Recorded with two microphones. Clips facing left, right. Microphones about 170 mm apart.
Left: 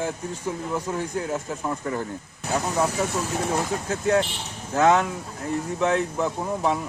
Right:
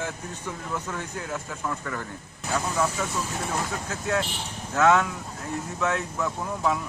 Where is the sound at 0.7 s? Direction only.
30° left (ahead or behind).